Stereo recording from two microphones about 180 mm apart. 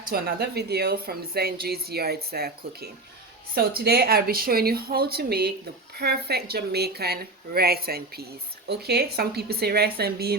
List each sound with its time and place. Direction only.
0.1 s a woman's voice: 60° right (ahead or behind)